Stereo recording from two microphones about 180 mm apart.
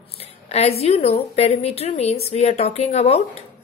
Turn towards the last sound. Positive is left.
turn(degrees=35)  # may be behind; listen again after turning